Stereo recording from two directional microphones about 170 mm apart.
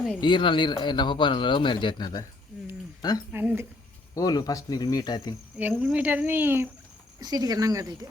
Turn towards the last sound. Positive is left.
turn(degrees=-20)  # may be behind; listen again after turning